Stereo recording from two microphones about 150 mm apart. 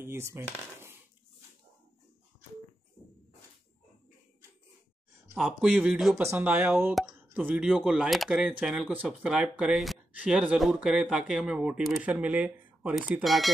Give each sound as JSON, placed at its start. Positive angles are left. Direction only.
{"t": 0.0, "sound": "speech", "side_deg": -15}
{"t": 5.3, "sound": "speech", "side_deg": 0}